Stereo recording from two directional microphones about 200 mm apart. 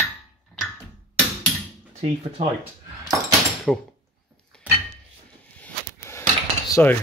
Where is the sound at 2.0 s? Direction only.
35° right (ahead or behind).